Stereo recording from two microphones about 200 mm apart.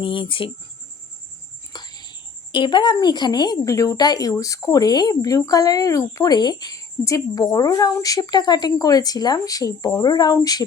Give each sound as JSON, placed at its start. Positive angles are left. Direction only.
{"t": 0.0, "sound": "a woman's voice", "side_deg": 25}
{"t": 1.7, "sound": "a woman's voice", "side_deg": 20}